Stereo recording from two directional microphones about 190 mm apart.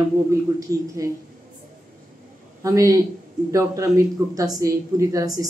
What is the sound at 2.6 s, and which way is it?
Speech, 15° right (ahead or behind).